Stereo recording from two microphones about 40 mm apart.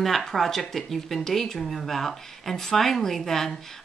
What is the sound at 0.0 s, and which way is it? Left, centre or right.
Speech, centre.